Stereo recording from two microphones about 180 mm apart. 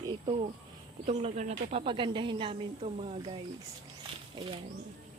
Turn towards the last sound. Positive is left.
turn(degrees=-25)  # may be behind; listen again after turning